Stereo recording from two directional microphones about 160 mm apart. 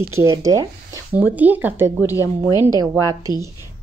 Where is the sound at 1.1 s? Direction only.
10° right (ahead or behind).